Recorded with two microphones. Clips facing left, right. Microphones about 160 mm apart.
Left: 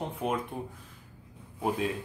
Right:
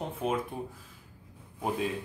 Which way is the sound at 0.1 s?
Centre (ahead or behind).